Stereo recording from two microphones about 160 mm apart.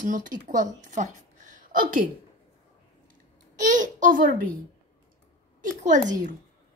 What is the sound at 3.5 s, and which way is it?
Speech, 50° right (ahead or behind).